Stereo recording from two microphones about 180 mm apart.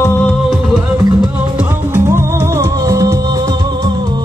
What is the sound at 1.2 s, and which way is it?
Music, 10° right (ahead or behind).